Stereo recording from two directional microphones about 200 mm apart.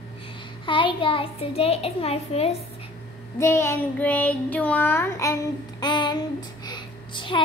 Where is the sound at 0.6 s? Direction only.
25° left (ahead or behind).